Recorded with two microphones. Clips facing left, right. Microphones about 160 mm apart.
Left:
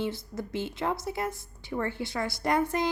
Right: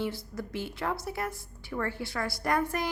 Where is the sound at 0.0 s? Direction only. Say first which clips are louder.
Left 1 dB; 20° left (ahead or behind).